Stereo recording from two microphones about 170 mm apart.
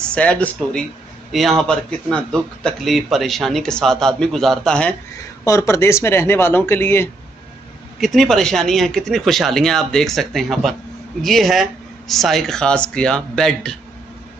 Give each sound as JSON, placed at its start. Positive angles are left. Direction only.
{"t": 0.0, "sound": "speech", "side_deg": 5}
{"t": 5.4, "sound": "speech", "side_deg": 15}
{"t": 8.0, "sound": "speech", "side_deg": 0}